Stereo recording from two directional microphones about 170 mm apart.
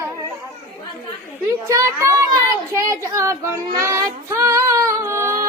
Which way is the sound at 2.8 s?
15° right (ahead or behind).